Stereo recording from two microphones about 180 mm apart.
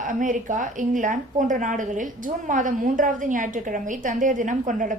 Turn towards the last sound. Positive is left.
turn(degrees=-45)  # may be behind; listen again after turning